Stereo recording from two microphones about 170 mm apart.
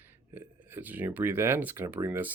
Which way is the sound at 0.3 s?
10° right (ahead or behind).